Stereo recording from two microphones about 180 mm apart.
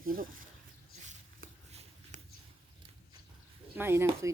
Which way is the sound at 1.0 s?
40° right (ahead or behind).